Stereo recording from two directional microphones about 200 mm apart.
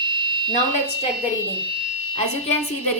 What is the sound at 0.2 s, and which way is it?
Fire alarm, 25° right (ahead or behind).